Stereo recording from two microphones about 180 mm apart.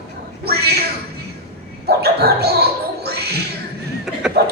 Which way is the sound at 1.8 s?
60° right (ahead or behind).